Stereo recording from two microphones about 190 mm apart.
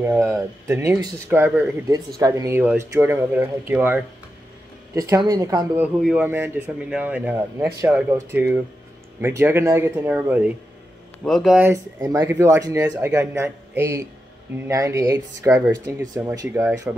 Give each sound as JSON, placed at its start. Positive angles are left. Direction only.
{"t": 0.0, "sound": "speech", "side_deg": -15}
{"t": 5.9, "sound": "speech", "side_deg": -5}